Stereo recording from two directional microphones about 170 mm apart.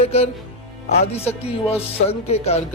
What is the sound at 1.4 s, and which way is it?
Speech, 35° left (ahead or behind).